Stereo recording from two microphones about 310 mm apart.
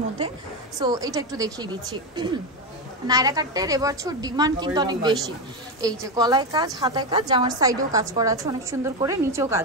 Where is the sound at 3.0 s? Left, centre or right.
Centre.